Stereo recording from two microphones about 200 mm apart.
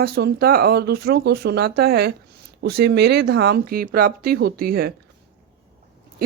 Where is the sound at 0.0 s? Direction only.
50° right (ahead or behind).